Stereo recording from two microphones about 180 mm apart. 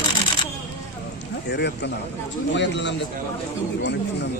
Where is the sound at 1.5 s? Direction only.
70° left (ahead or behind).